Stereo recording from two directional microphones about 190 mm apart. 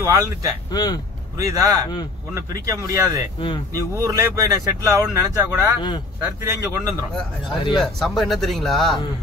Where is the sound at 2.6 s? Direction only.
15° right (ahead or behind).